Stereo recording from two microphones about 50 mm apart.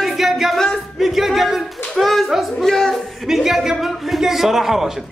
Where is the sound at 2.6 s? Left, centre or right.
Centre.